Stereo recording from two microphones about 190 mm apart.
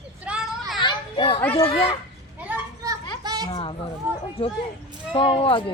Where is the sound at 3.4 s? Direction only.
30° left (ahead or behind).